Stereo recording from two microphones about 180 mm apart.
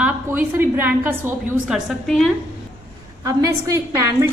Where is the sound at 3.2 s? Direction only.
15° right (ahead or behind).